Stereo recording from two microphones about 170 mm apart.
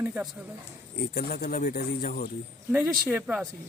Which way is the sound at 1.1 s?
65° left (ahead or behind).